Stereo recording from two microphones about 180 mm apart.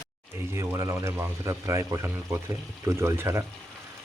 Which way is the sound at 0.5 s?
15° right (ahead or behind).